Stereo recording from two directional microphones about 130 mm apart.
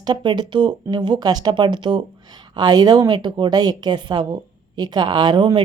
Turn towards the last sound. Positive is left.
turn(degrees=-40)  # may be behind; listen again after turning